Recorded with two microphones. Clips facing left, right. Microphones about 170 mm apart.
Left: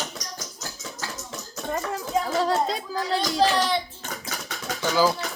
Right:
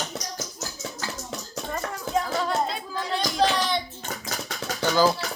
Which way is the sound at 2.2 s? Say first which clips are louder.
Left 3 dB; 35° left (ahead or behind).